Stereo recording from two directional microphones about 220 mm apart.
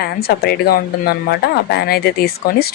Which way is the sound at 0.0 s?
45° left (ahead or behind).